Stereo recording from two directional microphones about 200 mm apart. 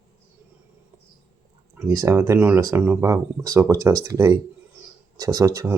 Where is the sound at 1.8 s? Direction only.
15° right (ahead or behind).